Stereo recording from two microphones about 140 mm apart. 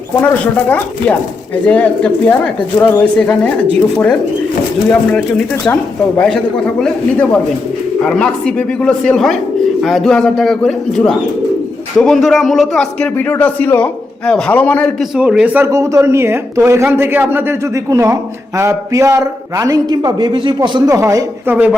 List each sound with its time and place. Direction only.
1.6 s a man's voice: 10° left (ahead or behind)
15.1 s speech: 5° right (ahead or behind); by 21.5 s 20° right (ahead or behind)
21.5 s speech: 10° right (ahead or behind)